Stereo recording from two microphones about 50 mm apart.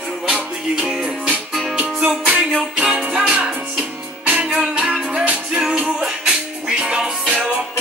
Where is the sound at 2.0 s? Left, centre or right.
Right.